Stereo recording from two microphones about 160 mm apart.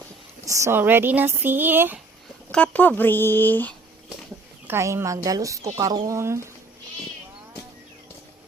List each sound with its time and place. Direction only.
0.4 s speech: 20° right (ahead or behind)
2.5 s speech: 10° left (ahead or behind)
4.6 s speech: 15° right (ahead or behind)